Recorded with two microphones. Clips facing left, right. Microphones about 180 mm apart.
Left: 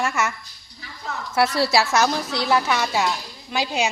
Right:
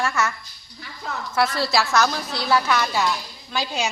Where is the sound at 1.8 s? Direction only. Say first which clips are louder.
Left 1 dB; 25° left (ahead or behind).